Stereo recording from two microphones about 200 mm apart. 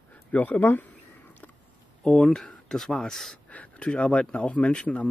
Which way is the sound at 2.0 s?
5° left (ahead or behind).